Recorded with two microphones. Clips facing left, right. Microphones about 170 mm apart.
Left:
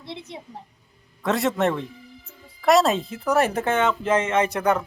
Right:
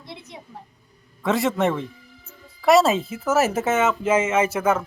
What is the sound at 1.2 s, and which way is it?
Speech, centre (ahead or behind).